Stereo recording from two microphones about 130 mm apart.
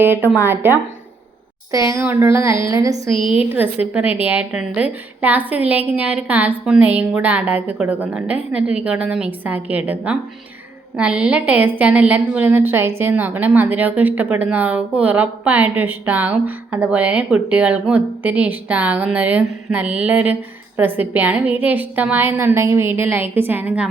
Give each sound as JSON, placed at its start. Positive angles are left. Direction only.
{"t": 0.3, "sound": "speech", "side_deg": -15}
{"t": 1.9, "sound": "speech", "side_deg": -20}
{"t": 3.2, "sound": "a woman's voice", "side_deg": 40}
{"t": 3.5, "sound": "speech", "side_deg": -15}